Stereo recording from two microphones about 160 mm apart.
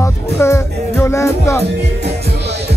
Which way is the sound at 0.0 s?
15° left (ahead or behind).